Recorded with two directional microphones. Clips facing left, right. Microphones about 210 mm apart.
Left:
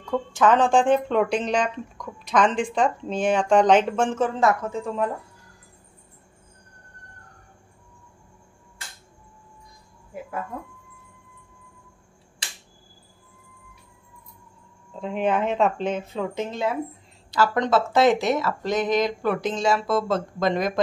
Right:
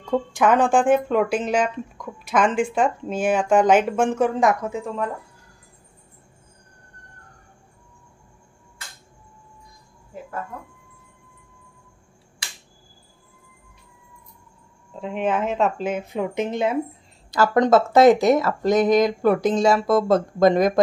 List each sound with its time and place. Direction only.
0.0 s speech: 15° right (ahead or behind)
15.0 s speech: centre (ahead or behind); by 16.7 s 20° right (ahead or behind)
17.3 s speech: 45° right (ahead or behind)